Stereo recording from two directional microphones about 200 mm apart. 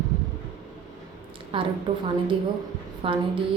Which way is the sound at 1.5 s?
25° right (ahead or behind).